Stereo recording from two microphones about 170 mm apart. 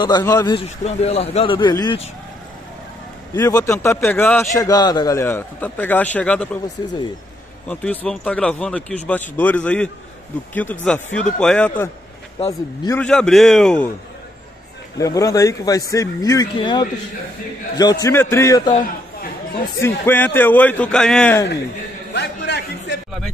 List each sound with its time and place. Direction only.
0.0 s speech: 25° left (ahead or behind)
0.6 s speech: 40° left (ahead or behind)
3.3 s a man's voice: 20° left (ahead or behind)
4.6 s a man's voice: 20° left (ahead or behind)
7.6 s a man's voice: 10° left (ahead or behind)
12.4 s speech: 20° left (ahead or behind)
13.0 s a man's voice: 5° left (ahead or behind)
15.0 s speech: 20° left (ahead or behind)
19.8 s a man's voice: 10° left (ahead or behind)
22.1 s a sound: 85° left